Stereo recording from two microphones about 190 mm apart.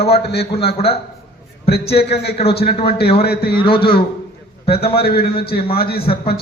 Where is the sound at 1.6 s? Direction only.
60° left (ahead or behind).